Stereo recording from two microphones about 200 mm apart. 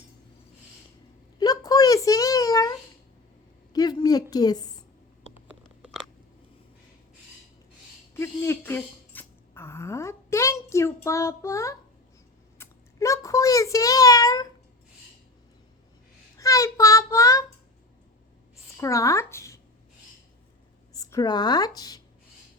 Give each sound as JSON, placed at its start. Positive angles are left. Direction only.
{"t": 1.4, "sound": "a sound", "side_deg": 20}
{"t": 5.5, "sound": "scissors", "side_deg": -5}
{"t": 8.1, "sound": "a sound", "side_deg": 10}
{"t": 16.4, "sound": "child singing", "side_deg": 15}
{"t": 18.8, "sound": "speech", "side_deg": 15}
{"t": 20.9, "sound": "speech", "side_deg": 20}